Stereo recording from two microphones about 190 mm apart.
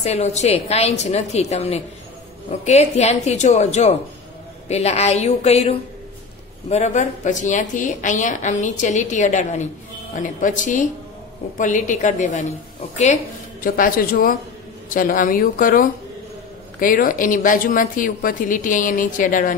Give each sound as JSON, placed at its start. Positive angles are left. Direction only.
{"t": 0.0, "sound": "a woman's voice", "side_deg": 35}